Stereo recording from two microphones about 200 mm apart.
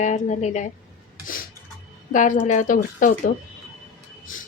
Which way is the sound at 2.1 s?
40° left (ahead or behind).